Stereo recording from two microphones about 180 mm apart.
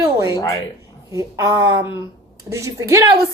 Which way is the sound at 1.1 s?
20° right (ahead or behind).